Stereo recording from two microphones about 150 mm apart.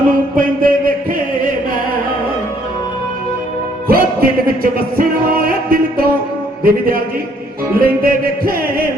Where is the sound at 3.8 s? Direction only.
80° right.